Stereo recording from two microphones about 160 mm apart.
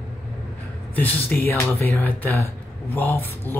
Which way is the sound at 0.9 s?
10° left (ahead or behind).